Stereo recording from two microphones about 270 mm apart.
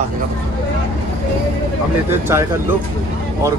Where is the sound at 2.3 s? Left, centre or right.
Centre.